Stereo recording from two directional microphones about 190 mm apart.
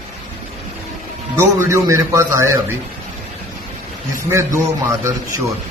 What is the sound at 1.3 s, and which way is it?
A man's voice, 15° right (ahead or behind).